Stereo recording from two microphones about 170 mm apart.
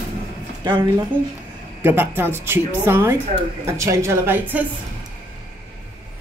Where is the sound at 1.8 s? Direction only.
10° right (ahead or behind).